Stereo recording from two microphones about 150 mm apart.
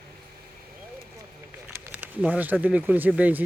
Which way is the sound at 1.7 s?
10° right (ahead or behind).